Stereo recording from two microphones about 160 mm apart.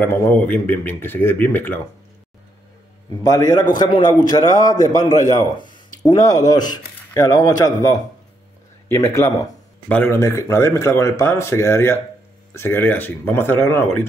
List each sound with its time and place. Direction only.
0.0 s speech: 15° left (ahead or behind)
3.3 s a man's voice: 20° left (ahead or behind)